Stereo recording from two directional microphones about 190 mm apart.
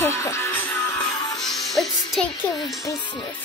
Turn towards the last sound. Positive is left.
turn(degrees=25)  # may be behind; listen again after turning